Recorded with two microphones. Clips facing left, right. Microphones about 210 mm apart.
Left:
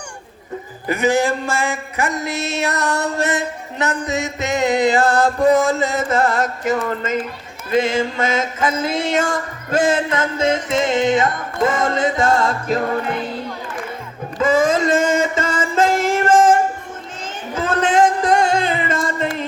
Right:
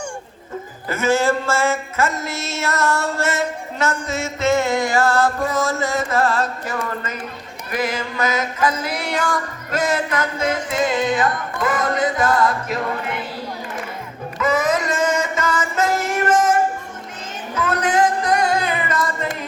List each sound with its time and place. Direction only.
0.9 s a sound: 15° left (ahead or behind)
7.7 s music: 25° left (ahead or behind)
14.3 s music: 25° left (ahead or behind)